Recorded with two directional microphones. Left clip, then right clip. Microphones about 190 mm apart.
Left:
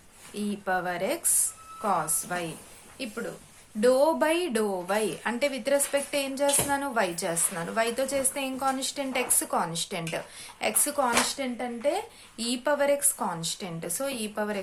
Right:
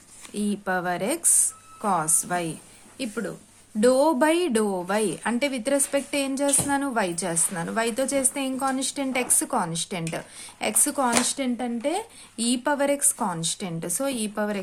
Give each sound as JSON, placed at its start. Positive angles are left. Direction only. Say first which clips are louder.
{"t": 0.3, "sound": "speech", "louder": "right 2 dB", "side_deg": -35}